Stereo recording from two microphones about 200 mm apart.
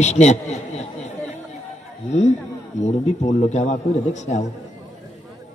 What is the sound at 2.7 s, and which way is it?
Speech, 35° left (ahead or behind).